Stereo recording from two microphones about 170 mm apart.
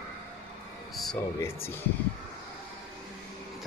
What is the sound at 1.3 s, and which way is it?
Speech, 15° left (ahead or behind).